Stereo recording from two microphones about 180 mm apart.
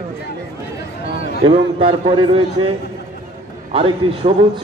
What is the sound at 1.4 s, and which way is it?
A man's voice, 30° right (ahead or behind).